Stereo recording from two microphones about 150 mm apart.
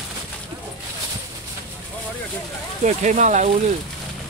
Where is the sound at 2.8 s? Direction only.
55° right (ahead or behind).